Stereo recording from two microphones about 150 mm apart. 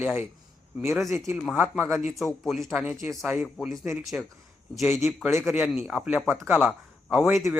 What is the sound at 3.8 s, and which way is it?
Speech, 20° right (ahead or behind).